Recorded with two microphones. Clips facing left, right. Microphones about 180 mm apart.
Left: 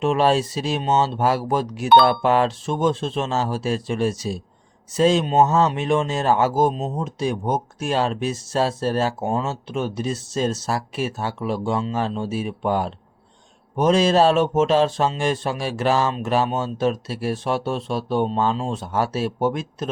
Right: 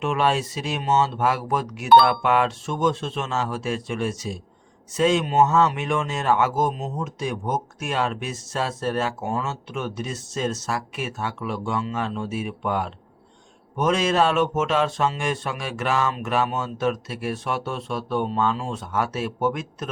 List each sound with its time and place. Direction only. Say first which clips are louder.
0.0 s speech: left 4 dB; 35° left (ahead or behind)